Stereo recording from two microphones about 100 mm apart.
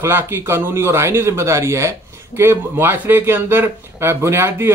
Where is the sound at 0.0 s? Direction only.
25° right (ahead or behind).